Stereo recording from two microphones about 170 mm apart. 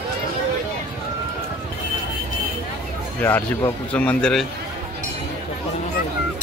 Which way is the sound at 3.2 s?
10° left (ahead or behind).